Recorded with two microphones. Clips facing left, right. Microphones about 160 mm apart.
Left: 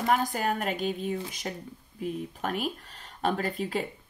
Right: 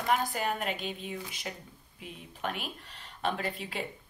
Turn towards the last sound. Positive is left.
turn(degrees=40)  # may be behind; listen again after turning